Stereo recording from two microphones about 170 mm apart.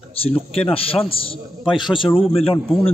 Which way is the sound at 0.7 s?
35° left (ahead or behind).